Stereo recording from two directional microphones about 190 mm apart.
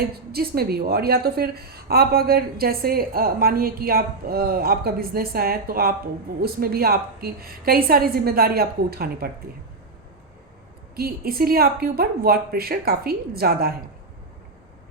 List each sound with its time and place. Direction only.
0.0 s a woman's voice: 55° right (ahead or behind)
10.9 s a woman's voice: 55° right (ahead or behind)